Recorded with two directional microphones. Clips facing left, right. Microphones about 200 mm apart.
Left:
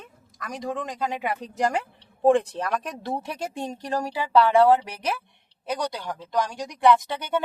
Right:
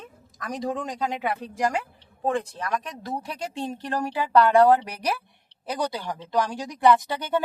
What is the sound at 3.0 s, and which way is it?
Speech, 25° left (ahead or behind).